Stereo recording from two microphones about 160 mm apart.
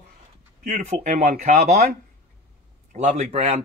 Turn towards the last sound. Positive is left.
turn(degrees=-45)  # may be behind; listen again after turning